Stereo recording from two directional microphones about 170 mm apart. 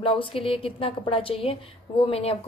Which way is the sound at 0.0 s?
30° left (ahead or behind).